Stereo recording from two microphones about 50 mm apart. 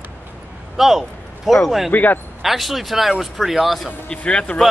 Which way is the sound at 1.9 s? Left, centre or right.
Left.